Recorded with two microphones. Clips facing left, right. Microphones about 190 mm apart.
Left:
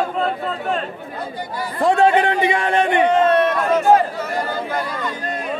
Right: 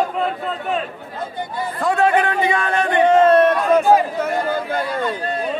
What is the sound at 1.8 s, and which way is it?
A man's voice, 25° left (ahead or behind).